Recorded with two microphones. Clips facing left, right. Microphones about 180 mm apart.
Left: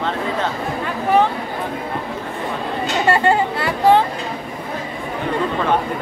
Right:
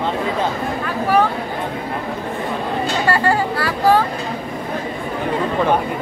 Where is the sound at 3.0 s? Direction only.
25° left (ahead or behind).